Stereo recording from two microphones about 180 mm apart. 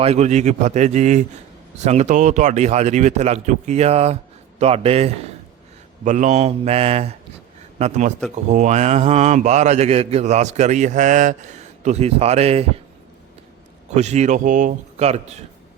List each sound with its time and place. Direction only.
0.0 s speech: 35° right (ahead or behind)
13.9 s speech: 40° right (ahead or behind)